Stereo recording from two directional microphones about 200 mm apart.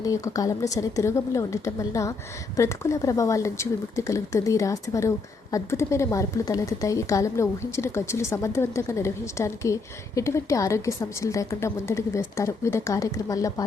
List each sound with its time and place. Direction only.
0.0 s speech: 15° left (ahead or behind)